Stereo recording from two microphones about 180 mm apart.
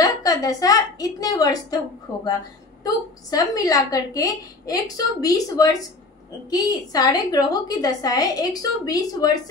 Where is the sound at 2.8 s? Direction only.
20° left (ahead or behind).